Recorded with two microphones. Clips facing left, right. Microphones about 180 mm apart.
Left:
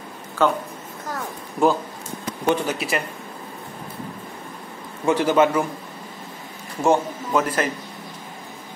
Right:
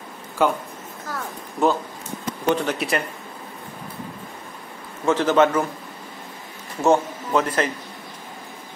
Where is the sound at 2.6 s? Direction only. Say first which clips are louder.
Right 1 dB; centre (ahead or behind).